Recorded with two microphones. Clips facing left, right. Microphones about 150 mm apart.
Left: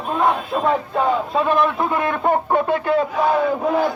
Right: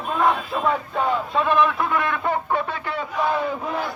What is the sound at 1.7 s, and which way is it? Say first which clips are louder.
Speech: left 3 dB; 25° left (ahead or behind).